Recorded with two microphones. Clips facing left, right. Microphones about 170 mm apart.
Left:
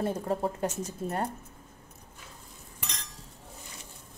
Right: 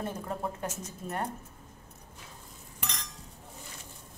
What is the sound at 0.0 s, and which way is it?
Speech, 30° left (ahead or behind).